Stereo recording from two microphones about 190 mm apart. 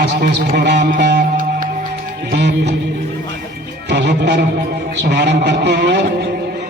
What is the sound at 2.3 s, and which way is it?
Speech, 65° right (ahead or behind).